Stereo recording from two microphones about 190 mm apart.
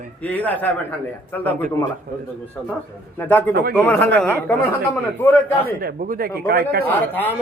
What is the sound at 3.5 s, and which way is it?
Speech, 55° right (ahead or behind).